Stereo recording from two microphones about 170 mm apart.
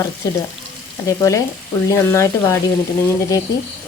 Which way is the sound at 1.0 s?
20° left (ahead or behind).